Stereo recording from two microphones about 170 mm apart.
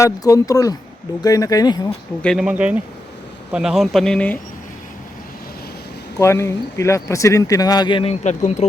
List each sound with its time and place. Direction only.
0.0 s speech: 20° left (ahead or behind)
2.2 s speech: centre (ahead or behind)
6.1 s speech: 15° left (ahead or behind)
8.2 s speech: 45° left (ahead or behind)